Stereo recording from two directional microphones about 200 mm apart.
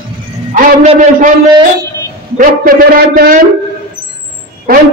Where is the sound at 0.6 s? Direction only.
40° right (ahead or behind).